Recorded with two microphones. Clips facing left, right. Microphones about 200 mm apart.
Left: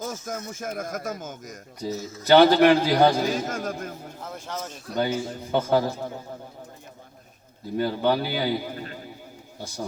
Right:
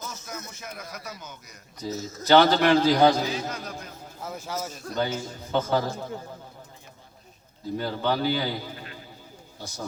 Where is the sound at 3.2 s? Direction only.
45° left (ahead or behind).